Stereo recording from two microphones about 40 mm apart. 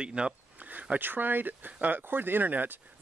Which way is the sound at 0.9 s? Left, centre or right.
Right.